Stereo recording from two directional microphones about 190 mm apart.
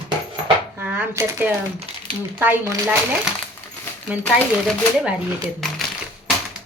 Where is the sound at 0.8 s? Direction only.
10° right (ahead or behind).